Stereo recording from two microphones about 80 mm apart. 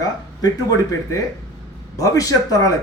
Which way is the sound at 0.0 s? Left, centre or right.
Left.